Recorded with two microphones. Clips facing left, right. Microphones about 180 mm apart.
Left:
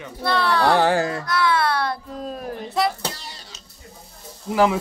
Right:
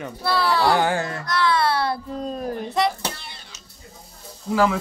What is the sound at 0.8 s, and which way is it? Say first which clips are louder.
Speech: left 4 dB; 35° left (ahead or behind).